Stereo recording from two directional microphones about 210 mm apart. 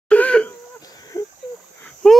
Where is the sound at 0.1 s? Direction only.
5° left (ahead or behind).